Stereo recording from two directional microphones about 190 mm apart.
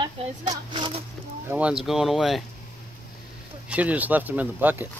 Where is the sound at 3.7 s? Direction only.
10° right (ahead or behind).